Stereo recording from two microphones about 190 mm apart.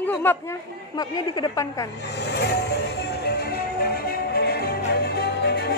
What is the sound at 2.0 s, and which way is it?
Music, 60° left (ahead or behind).